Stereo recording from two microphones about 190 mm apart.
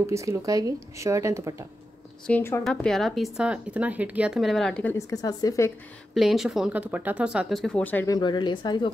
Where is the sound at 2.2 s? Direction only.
10° left (ahead or behind).